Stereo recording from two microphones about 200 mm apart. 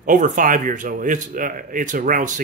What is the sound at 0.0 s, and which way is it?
Speech, 40° right (ahead or behind).